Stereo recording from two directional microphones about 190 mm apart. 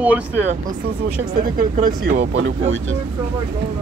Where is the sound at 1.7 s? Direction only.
45° right (ahead or behind); by 2.5 s 60° right (ahead or behind).